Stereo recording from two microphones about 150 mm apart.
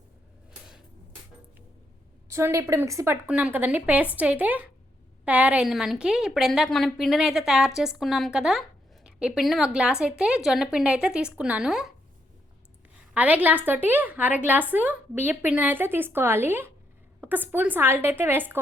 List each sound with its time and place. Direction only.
2.3 s a woman's voice: 20° right (ahead or behind)
3.2 s a woman's voice: 10° right (ahead or behind)
13.1 s a woman's voice: 10° right (ahead or behind)